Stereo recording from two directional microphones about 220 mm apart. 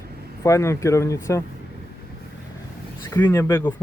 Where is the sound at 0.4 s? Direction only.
15° left (ahead or behind).